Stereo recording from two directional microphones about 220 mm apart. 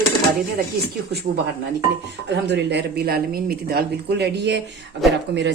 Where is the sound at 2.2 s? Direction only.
50° right (ahead or behind).